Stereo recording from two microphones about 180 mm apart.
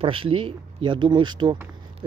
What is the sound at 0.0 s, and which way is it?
Speech, 30° right (ahead or behind).